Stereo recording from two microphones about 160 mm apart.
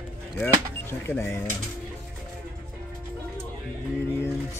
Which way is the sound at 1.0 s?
15° left (ahead or behind).